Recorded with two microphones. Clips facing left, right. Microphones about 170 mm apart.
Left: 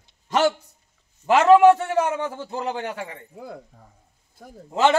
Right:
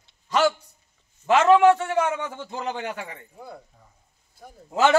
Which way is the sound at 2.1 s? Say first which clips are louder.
Left 4 dB; 35° left (ahead or behind).